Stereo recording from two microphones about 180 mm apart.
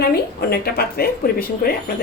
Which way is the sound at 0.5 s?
60° left (ahead or behind).